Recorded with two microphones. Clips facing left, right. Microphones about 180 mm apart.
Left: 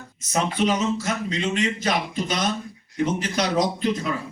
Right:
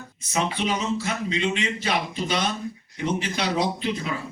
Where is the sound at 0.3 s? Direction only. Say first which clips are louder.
Left 3 dB; 45° left (ahead or behind).